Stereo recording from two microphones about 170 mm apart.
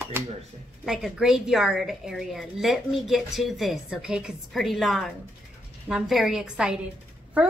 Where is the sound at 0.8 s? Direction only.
Centre (ahead or behind).